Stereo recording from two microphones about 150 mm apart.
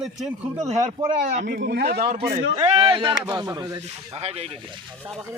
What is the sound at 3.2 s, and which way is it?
Speech, 20° right (ahead or behind).